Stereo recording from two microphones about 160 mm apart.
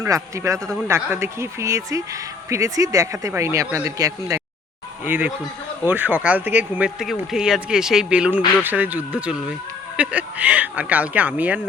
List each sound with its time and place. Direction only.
0.0 s speech: 20° right (ahead or behind)